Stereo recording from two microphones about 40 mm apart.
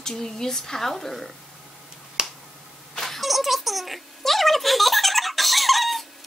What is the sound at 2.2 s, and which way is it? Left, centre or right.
Finger snapping, centre.